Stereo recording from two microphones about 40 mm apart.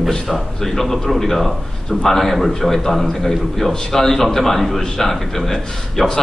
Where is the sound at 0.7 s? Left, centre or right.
Centre.